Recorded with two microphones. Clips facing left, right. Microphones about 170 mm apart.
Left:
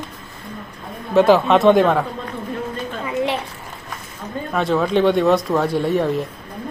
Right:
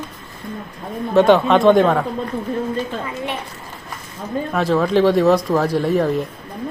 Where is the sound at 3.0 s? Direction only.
20° left (ahead or behind).